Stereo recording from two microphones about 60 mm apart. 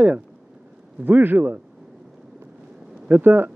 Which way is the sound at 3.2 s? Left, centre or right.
Right.